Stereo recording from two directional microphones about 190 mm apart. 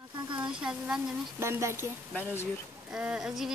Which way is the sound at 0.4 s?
5° right (ahead or behind).